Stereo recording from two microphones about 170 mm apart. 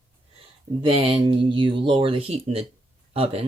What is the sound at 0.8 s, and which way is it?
Speech, 35° right (ahead or behind).